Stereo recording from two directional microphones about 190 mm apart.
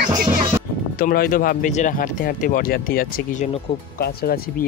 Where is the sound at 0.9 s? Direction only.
50° left (ahead or behind).